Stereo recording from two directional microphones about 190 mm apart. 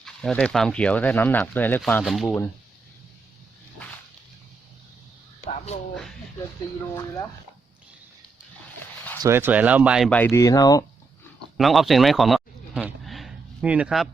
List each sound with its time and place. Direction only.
0.0 s speech: 5° left (ahead or behind)
9.2 s speech: 10° right (ahead or behind)
10.1 s speech: 10° left (ahead or behind)
11.5 s a sound: centre (ahead or behind)